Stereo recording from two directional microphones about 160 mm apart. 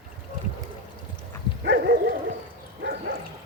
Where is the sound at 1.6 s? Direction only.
90° right.